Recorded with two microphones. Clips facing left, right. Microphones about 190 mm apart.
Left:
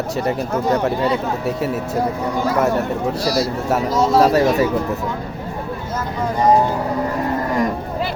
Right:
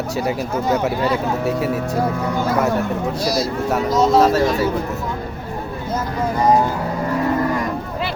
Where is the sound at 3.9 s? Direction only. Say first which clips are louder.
Even; 10° left (ahead or behind).